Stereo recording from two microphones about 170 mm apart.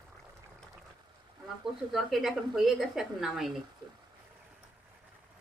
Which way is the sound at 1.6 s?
Centre (ahead or behind).